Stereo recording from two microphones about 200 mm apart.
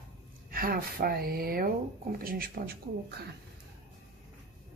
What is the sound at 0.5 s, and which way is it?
A woman's voice, 50° right (ahead or behind).